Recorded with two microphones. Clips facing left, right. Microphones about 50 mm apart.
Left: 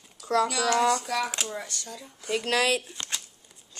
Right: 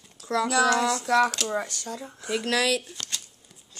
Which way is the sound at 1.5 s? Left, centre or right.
Right.